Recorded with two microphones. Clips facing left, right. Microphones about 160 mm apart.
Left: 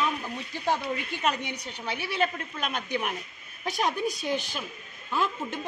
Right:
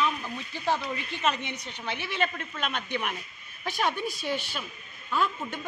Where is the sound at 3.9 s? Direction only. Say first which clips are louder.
Left 3 dB; 40° left (ahead or behind).